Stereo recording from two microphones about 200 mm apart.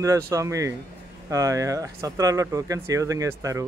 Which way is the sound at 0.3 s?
15° right (ahead or behind).